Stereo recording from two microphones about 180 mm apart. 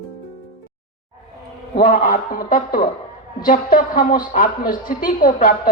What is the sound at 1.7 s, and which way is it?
Music, 50° left (ahead or behind).